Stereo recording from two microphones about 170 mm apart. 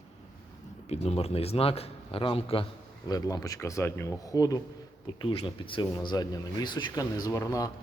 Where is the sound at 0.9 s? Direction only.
35° left (ahead or behind).